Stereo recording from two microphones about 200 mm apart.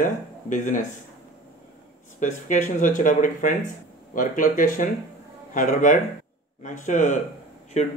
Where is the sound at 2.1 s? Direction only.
40° left (ahead or behind).